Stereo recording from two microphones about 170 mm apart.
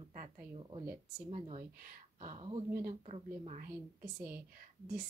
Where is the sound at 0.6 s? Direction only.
35° right (ahead or behind).